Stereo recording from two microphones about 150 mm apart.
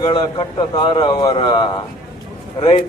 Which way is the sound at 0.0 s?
35° left (ahead or behind).